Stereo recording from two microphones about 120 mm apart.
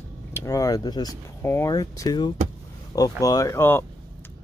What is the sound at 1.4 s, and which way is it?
Speech, 20° left (ahead or behind).